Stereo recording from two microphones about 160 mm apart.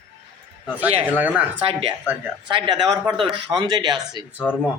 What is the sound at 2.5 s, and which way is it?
Speech, 25° right (ahead or behind).